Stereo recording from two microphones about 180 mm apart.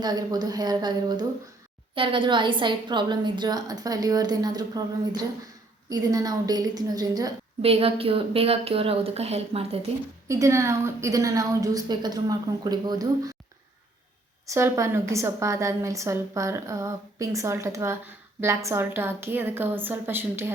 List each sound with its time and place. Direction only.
0.0 s a woman's voice: 20° right (ahead or behind)
7.6 s a woman's voice: 35° right (ahead or behind)
10.2 s a woman's voice: 15° right (ahead or behind)
14.4 s a woman's voice: 15° right (ahead or behind)